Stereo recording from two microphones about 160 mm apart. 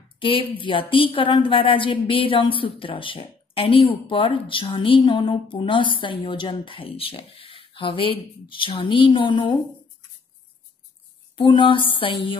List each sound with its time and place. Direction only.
0.2 s a woman's voice: 35° left (ahead or behind)
11.3 s a woman's voice: 30° left (ahead or behind)